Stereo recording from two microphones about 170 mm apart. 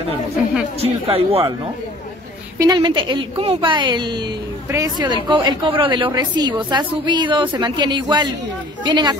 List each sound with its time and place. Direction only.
0.7 s speech: 35° right (ahead or behind)
2.6 s a woman's voice: 25° right (ahead or behind)